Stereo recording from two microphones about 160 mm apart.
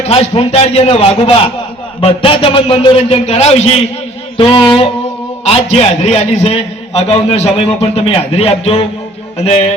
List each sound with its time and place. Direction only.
0.0 s a man's voice: 40° left (ahead or behind)